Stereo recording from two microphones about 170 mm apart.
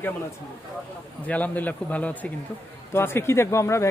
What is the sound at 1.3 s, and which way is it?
Speech, 10° left (ahead or behind).